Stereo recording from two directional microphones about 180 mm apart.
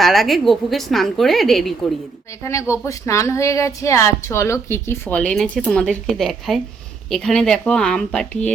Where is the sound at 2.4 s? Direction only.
15° left (ahead or behind).